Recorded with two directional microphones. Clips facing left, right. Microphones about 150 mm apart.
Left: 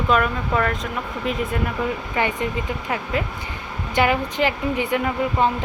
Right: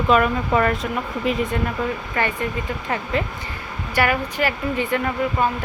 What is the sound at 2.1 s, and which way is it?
Speech, 15° left (ahead or behind).